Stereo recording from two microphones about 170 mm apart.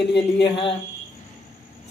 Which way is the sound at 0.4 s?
30° left (ahead or behind).